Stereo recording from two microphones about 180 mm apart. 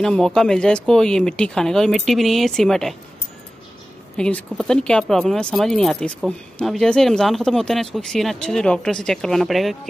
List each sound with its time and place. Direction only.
0.0 s speech: 5° left (ahead or behind)
4.2 s speech: 5° left (ahead or behind)